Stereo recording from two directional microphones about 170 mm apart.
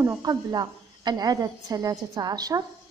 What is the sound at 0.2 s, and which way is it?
Speech, 25° right (ahead or behind).